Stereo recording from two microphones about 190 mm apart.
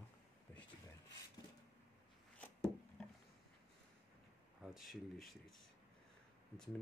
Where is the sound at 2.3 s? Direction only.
5° left (ahead or behind).